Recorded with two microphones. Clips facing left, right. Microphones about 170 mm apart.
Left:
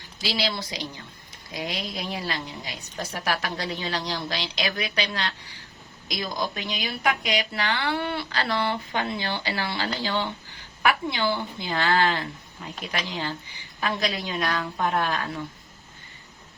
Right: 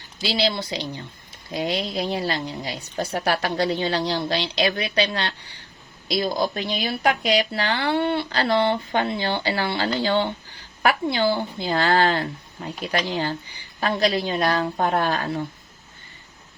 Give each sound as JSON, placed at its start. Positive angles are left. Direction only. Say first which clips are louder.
{"t": 0.2, "sound": "a woman's voice", "louder": "right 5 dB", "side_deg": -30}